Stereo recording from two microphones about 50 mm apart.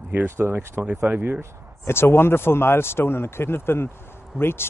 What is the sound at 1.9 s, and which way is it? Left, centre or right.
Speech, left.